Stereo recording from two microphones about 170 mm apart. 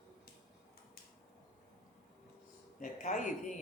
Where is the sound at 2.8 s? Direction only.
50° left (ahead or behind).